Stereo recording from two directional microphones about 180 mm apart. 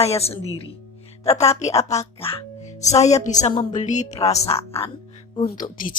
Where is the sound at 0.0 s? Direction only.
35° left (ahead or behind).